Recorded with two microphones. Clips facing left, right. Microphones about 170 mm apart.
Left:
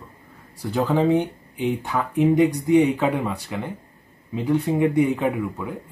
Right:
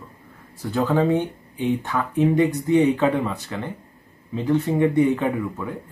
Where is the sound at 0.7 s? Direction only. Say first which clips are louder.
Even; 10° left (ahead or behind).